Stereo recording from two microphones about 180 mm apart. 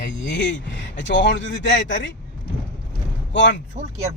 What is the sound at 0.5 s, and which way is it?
Speech, 85° left.